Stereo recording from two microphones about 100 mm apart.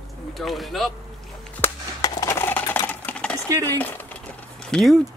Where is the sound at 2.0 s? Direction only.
30° left (ahead or behind).